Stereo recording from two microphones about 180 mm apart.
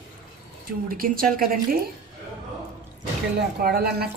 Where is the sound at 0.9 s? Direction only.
50° right (ahead or behind).